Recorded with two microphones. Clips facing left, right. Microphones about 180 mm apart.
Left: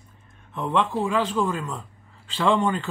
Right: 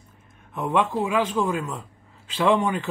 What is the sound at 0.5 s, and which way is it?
A man's voice, 10° right (ahead or behind).